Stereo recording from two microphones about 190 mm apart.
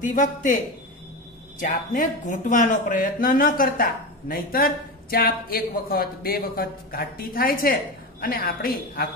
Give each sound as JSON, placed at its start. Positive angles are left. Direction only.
{"t": 0.0, "sound": "speech", "side_deg": 45}
{"t": 1.6, "sound": "speech", "side_deg": 40}